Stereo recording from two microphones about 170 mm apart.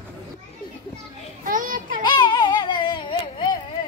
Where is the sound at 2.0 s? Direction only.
25° left (ahead or behind).